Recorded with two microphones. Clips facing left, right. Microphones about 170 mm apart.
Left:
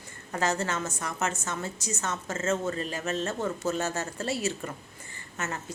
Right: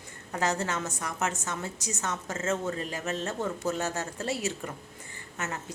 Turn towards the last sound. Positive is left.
turn(degrees=-15)  # may be behind; listen again after turning